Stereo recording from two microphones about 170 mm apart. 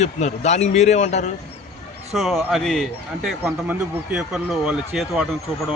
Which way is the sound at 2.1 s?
Centre (ahead or behind).